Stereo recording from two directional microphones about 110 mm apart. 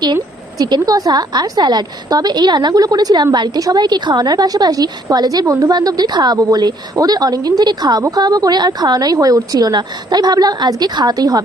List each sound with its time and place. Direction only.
0.6 s a woman's voice: 35° right (ahead or behind)